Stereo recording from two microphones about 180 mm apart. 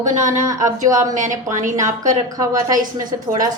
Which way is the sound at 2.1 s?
20° right (ahead or behind).